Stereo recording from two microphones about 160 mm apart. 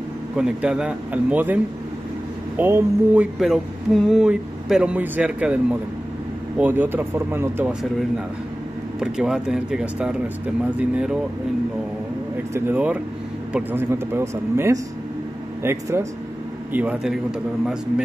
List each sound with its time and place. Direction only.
0.4 s speech: 5° right (ahead or behind)
3.3 s speech: centre (ahead or behind)
6.6 s speech: 10° right (ahead or behind)
9.0 s speech: 5° right (ahead or behind)
12.5 s speech: 10° right (ahead or behind)